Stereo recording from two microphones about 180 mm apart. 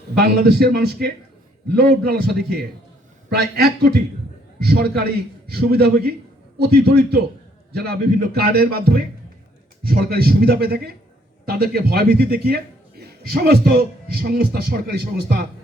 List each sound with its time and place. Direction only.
0.2 s a man's voice: 60° right (ahead or behind)